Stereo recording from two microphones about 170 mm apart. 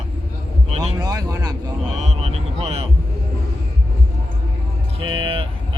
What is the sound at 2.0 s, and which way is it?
Speech, 40° right (ahead or behind).